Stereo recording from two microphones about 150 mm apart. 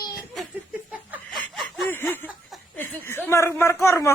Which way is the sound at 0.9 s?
10° right (ahead or behind).